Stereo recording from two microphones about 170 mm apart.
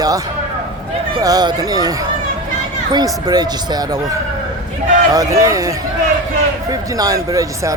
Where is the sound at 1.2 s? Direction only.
25° right (ahead or behind).